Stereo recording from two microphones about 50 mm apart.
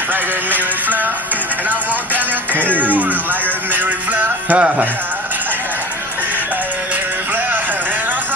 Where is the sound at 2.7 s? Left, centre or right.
Right.